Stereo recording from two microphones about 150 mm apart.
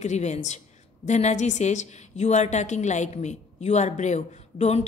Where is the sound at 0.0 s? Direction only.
50° left (ahead or behind).